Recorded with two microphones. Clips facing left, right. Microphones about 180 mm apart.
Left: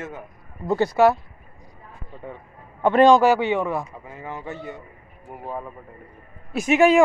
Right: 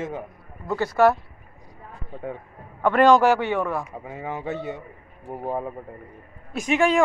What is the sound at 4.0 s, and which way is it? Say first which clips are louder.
Speech: right 3 dB; 20° right (ahead or behind).